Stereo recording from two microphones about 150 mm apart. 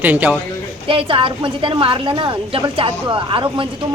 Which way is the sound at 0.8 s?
35° right (ahead or behind).